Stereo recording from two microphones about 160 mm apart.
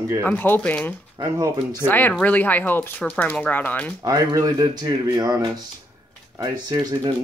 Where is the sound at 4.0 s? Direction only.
20° right (ahead or behind).